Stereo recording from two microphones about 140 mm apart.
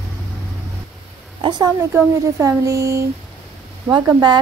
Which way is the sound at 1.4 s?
30° right (ahead or behind).